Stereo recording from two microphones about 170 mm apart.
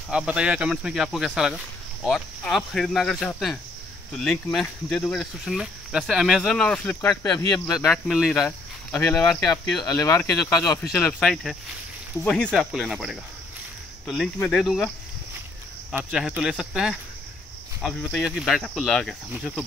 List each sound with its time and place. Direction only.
0.1 s speech: 5° right (ahead or behind)
7.7 s speech: centre (ahead or behind); by 10.8 s 20° left (ahead or behind)
10.9 s speech: 10° left (ahead or behind)
15.9 s speech: 5° right (ahead or behind)